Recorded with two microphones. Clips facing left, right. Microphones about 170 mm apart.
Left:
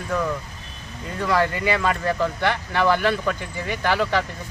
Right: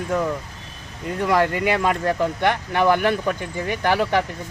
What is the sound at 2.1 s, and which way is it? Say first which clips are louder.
Speech: right 2 dB; 20° right (ahead or behind).